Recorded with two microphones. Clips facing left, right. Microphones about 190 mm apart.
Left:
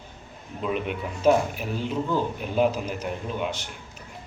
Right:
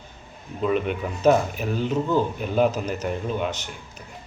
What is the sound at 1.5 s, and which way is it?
A man's voice, 45° right (ahead or behind).